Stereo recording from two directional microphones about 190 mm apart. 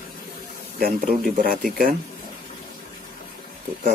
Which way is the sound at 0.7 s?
50° right (ahead or behind).